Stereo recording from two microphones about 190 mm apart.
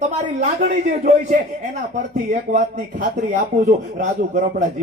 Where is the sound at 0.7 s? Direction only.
40° right (ahead or behind).